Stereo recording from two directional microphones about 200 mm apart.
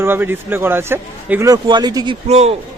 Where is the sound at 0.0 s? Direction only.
10° right (ahead or behind).